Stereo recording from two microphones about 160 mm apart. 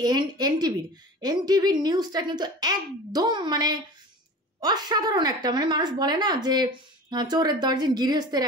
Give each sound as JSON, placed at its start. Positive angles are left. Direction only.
{"t": 0.0, "sound": "a woman's voice", "side_deg": -25}